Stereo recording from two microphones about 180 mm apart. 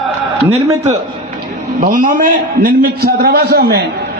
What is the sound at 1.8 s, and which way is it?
A man's voice, 50° right (ahead or behind).